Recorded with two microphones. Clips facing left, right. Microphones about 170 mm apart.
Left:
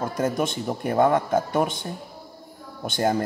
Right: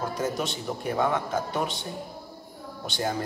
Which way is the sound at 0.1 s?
50° left (ahead or behind).